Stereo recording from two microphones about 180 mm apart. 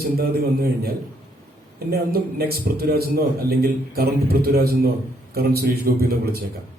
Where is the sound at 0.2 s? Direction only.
60° right (ahead or behind).